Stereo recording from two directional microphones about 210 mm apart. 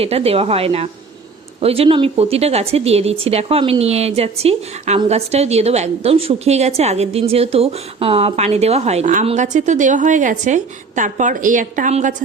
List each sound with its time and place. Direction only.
0.0 s speech: 30° right (ahead or behind)